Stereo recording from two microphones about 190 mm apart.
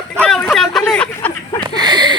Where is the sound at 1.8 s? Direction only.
20° right (ahead or behind).